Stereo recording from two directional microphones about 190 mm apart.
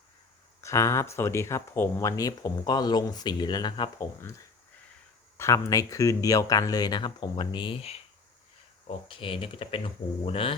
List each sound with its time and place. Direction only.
0.6 s speech: 15° left (ahead or behind)
5.4 s speech: 15° left (ahead or behind)
9.0 s speech: 25° left (ahead or behind)